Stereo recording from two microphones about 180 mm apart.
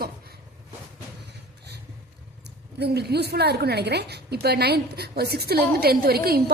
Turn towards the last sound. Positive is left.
turn(degrees=-60)  # may be behind; listen again after turning